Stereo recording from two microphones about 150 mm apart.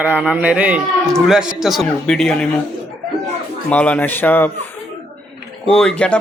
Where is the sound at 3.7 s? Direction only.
10° left (ahead or behind).